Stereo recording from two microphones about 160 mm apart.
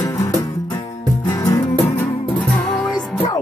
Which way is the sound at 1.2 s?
20° left (ahead or behind).